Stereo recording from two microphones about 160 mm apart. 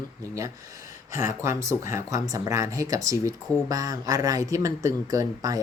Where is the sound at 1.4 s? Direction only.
20° right (ahead or behind).